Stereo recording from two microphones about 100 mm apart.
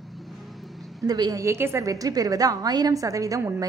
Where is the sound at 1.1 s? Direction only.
40° right (ahead or behind).